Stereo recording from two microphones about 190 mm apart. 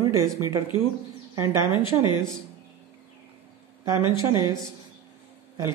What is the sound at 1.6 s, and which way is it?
Speech, 25° left (ahead or behind).